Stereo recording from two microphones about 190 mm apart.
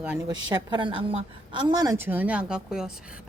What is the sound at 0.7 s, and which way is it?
A woman's voice, 25° right (ahead or behind).